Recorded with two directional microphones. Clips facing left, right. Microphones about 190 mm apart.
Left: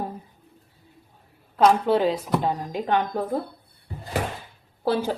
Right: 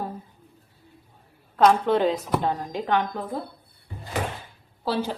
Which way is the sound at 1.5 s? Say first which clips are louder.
Even; 5° left (ahead or behind).